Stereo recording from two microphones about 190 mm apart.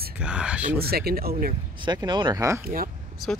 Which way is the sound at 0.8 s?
55° right (ahead or behind).